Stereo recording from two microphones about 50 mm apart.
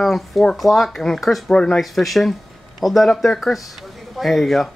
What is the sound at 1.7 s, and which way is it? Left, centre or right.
Speech, centre.